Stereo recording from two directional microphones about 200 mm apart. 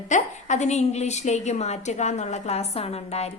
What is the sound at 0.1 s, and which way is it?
A woman's voice, 35° left (ahead or behind).